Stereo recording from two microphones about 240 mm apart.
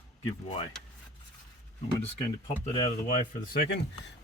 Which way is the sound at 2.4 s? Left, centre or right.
Left.